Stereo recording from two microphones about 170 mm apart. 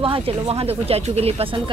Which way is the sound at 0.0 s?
35° right (ahead or behind).